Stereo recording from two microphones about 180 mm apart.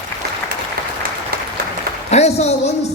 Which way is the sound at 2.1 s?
35° left (ahead or behind).